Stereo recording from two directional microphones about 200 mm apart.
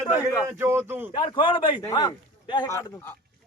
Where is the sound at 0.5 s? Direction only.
10° right (ahead or behind).